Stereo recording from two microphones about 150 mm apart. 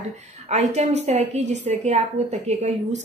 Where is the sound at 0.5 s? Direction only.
45° right (ahead or behind).